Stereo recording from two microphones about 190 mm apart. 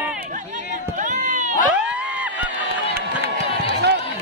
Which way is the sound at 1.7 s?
5° right (ahead or behind).